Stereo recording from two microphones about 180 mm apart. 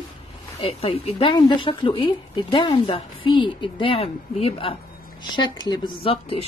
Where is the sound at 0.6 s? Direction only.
35° left (ahead or behind).